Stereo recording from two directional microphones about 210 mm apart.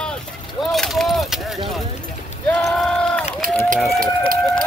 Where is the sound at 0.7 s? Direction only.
Centre (ahead or behind).